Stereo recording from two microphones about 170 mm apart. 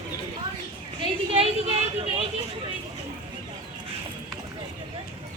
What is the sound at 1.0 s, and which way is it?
A woman's voice, 35° right (ahead or behind).